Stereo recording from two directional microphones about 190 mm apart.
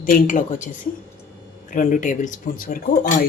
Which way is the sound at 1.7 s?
40° left (ahead or behind).